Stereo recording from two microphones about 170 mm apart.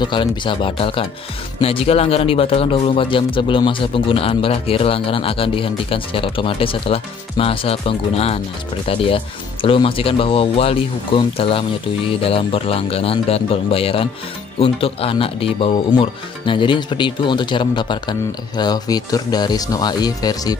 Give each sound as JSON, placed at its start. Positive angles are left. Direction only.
{"t": 0.0, "sound": "speech", "side_deg": 30}